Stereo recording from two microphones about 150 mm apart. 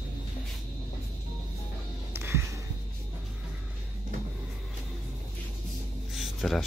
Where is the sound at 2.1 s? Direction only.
15° right (ahead or behind).